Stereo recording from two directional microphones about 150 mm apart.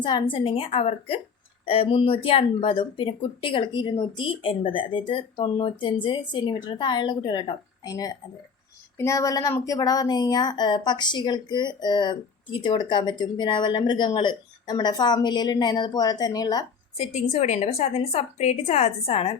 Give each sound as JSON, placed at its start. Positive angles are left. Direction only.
{"t": 0.0, "sound": "a woman's voice", "side_deg": 30}
{"t": 17.0, "sound": "a woman's voice", "side_deg": 50}